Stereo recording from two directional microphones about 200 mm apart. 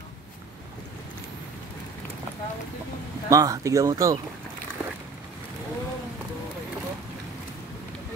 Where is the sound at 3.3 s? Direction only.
15° right (ahead or behind).